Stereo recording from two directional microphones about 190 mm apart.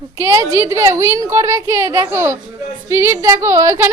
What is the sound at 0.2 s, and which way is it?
A woman's voice, 15° right (ahead or behind).